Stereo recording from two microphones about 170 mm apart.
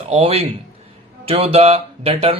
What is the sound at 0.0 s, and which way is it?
A man's voice, 35° right (ahead or behind).